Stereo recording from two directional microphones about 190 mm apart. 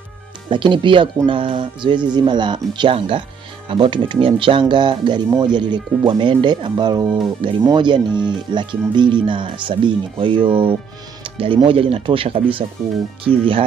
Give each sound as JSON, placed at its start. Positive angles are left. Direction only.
{"t": 0.5, "sound": "speech", "side_deg": -25}